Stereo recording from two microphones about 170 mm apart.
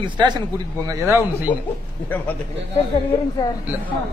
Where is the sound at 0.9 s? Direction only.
15° right (ahead or behind).